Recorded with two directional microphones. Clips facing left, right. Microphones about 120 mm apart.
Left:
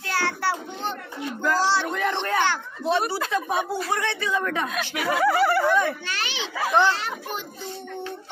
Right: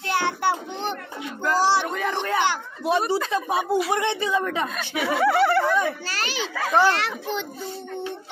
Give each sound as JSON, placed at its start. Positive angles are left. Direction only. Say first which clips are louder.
{"t": 0.0, "sound": "children playing", "louder": "right 3 dB", "side_deg": -20}
{"t": 1.4, "sound": "a sound", "louder": "right 2 dB", "side_deg": -15}
{"t": 3.4, "sound": "speech", "louder": "right 3 dB", "side_deg": -5}
{"t": 3.9, "sound": "speech", "louder": "right 3 dB", "side_deg": -20}
{"t": 4.6, "sound": "speech", "louder": "even", "side_deg": 0}
{"t": 6.0, "sound": "a child's voice", "louder": "right 2 dB", "side_deg": -40}
{"t": 6.5, "sound": "a child's voice", "louder": "even", "side_deg": 5}
{"t": 6.9, "sound": "a child's voice", "louder": "right 3 dB", "side_deg": -85}